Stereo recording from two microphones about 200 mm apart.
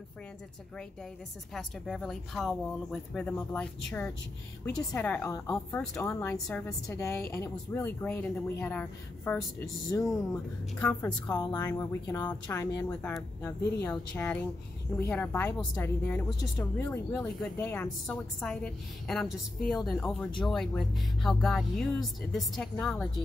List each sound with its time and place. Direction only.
1.5 s a woman's voice: centre (ahead or behind)
11.3 s a woman's voice: 20° left (ahead or behind); by 23.2 s centre (ahead or behind)